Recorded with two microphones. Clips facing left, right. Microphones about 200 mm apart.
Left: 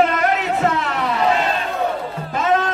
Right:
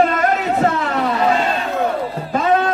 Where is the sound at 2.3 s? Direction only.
40° right (ahead or behind).